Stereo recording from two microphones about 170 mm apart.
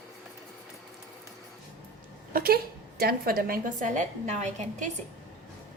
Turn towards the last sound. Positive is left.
turn(degrees=-45)  # may be behind; listen again after turning